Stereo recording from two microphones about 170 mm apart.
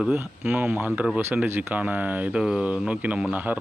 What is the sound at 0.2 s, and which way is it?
Speech, 15° right (ahead or behind).